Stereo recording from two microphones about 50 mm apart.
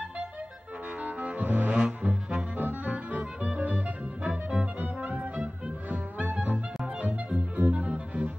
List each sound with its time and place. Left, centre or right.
1.0 s brass instrument: right
2.5 s music: right; by 4.6 s centre
4.7 s music: right